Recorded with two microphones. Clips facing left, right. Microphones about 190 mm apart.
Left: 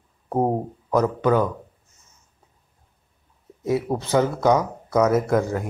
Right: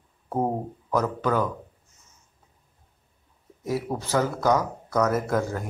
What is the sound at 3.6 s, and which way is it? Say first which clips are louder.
Speech: left 5 dB; 20° left (ahead or behind).